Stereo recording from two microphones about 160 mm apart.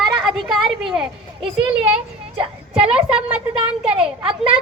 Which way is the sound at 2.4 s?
5° right (ahead or behind).